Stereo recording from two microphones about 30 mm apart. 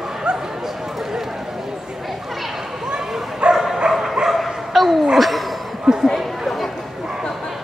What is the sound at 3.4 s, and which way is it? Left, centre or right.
Dog, right.